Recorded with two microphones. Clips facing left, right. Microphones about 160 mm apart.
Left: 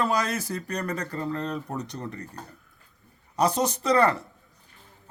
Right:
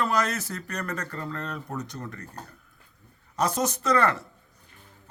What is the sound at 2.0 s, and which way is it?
Speech, 20° left (ahead or behind).